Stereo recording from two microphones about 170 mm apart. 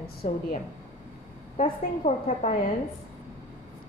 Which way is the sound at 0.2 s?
45° left (ahead or behind).